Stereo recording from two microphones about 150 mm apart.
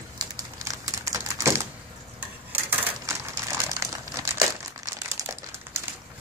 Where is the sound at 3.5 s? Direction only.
20° right (ahead or behind).